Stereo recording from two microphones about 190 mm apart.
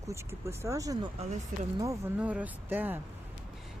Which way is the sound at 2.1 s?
5° right (ahead or behind).